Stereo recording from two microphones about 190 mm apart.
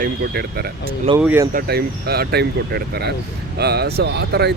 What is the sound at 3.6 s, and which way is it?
Speech, 60° right (ahead or behind).